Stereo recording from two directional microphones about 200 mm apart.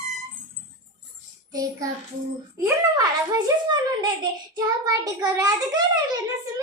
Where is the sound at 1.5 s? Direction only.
15° right (ahead or behind).